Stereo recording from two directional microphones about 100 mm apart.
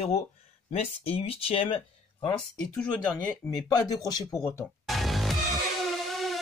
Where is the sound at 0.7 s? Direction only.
85° left.